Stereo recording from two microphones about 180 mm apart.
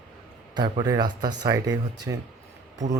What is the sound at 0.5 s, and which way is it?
A man's voice, 25° right (ahead or behind).